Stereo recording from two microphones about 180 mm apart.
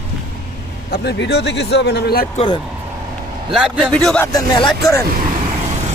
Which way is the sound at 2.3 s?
25° left (ahead or behind).